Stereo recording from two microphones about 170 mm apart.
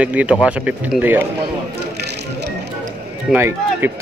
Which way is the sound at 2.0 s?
80° right.